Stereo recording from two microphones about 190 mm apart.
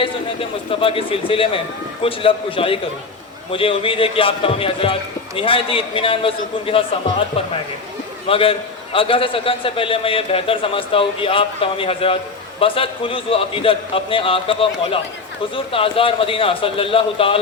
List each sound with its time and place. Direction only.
0.0 s a man's voice: 30° left (ahead or behind)
8.3 s a man's voice: 30° left (ahead or behind)